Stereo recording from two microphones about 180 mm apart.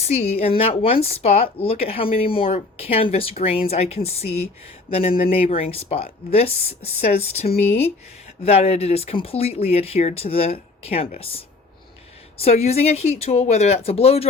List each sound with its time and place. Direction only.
0.0 s speech: 35° left (ahead or behind)